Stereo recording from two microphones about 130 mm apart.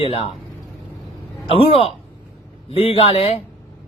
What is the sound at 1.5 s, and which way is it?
A man's voice, 45° left (ahead or behind).